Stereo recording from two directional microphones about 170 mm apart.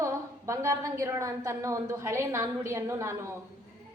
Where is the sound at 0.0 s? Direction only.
15° right (ahead or behind).